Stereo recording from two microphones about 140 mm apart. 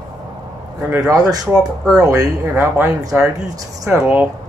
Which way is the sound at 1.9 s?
25° right (ahead or behind).